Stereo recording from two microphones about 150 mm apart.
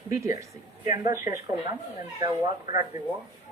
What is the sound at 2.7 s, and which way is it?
Speech, 55° left (ahead or behind).